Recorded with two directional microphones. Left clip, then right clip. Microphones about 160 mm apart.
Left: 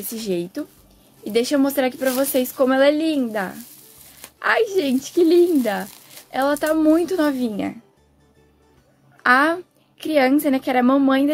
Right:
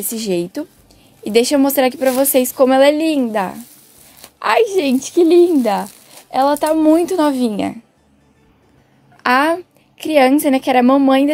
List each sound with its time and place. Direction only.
0.1 s a woman's voice: 20° right (ahead or behind)
9.1 s a woman's voice: 20° right (ahead or behind)